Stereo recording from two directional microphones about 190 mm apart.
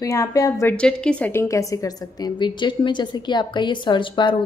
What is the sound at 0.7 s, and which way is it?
A woman's voice, 5° left (ahead or behind).